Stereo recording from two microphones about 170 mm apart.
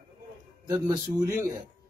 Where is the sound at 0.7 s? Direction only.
25° right (ahead or behind).